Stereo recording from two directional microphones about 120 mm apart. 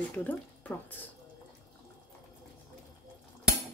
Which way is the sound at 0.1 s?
10° left (ahead or behind).